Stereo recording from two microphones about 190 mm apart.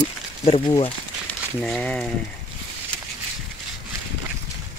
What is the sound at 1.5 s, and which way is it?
Speech, 5° left (ahead or behind).